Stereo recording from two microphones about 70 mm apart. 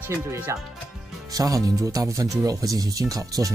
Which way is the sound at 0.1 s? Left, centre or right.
Right.